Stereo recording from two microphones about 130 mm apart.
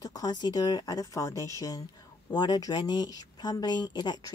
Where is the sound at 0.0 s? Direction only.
30° left (ahead or behind).